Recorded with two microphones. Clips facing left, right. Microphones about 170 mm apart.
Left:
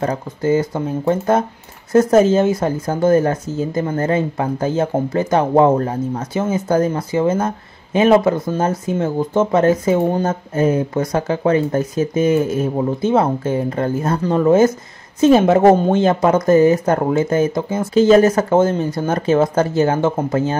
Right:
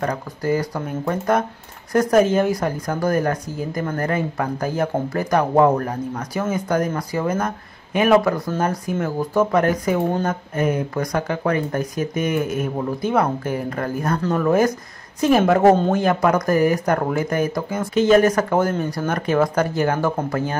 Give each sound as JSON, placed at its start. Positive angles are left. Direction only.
{"t": 0.0, "sound": "speech", "side_deg": 25}